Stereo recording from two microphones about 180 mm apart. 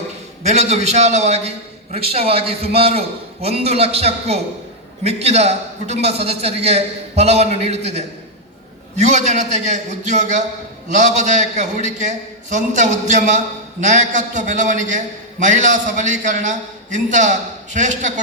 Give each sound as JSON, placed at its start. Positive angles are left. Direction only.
{"t": 0.4, "sound": "a man's voice", "side_deg": -35}